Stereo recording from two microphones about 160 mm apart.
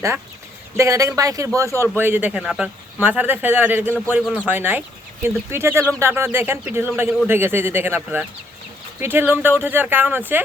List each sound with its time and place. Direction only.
0.8 s speech: 20° right (ahead or behind)